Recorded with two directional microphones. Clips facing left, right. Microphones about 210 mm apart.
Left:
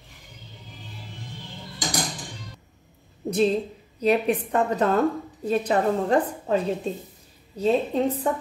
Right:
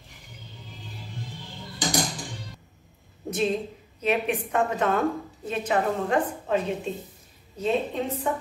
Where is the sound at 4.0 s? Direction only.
35° left (ahead or behind).